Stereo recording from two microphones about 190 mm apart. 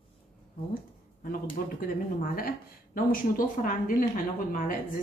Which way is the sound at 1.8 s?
50° left (ahead or behind).